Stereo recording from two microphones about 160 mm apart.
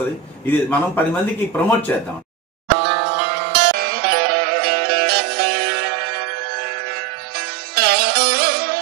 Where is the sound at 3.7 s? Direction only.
70° right (ahead or behind).